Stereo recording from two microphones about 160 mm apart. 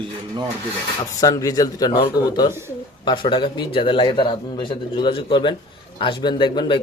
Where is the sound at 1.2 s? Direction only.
25° left (ahead or behind).